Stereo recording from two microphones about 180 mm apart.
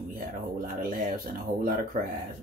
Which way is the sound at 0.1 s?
50° right (ahead or behind).